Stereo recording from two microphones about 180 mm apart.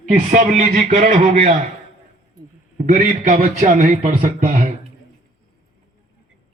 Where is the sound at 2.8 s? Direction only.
45° right (ahead or behind).